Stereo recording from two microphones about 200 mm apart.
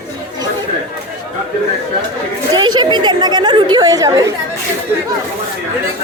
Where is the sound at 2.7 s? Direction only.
20° right (ahead or behind).